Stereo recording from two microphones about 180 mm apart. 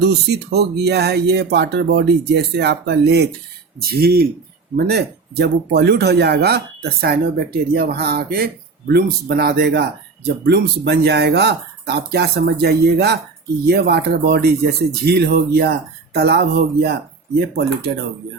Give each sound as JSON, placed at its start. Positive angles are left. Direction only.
{"t": 0.0, "sound": "speech", "side_deg": -65}